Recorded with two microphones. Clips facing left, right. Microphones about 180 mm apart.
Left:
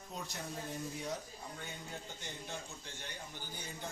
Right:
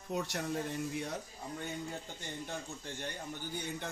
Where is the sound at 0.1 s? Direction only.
70° right (ahead or behind).